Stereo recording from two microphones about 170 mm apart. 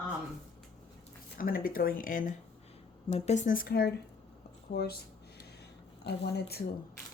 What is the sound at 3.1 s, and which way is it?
Speech, 40° left (ahead or behind).